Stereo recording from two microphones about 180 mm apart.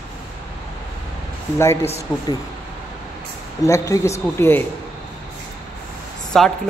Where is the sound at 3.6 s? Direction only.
15° left (ahead or behind).